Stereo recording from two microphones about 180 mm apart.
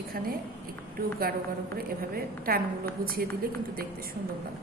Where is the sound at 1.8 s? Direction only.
55° right (ahead or behind).